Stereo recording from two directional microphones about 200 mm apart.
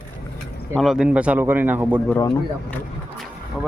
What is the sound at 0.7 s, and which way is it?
Speech, centre (ahead or behind).